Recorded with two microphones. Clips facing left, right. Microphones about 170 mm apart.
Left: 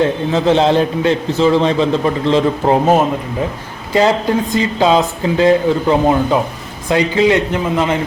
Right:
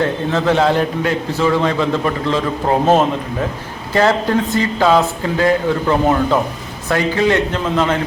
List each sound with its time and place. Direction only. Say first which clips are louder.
0.3 s a man's voice: left 3 dB; 20° left (ahead or behind)
3.9 s speech: left 1 dB; 15° left (ahead or behind)